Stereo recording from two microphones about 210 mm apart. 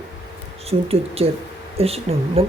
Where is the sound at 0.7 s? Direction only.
30° right (ahead or behind).